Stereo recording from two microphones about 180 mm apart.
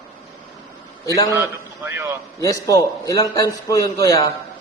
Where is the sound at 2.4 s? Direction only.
20° left (ahead or behind).